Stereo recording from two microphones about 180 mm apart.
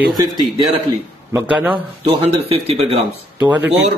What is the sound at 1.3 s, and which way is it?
Speech, 10° right (ahead or behind).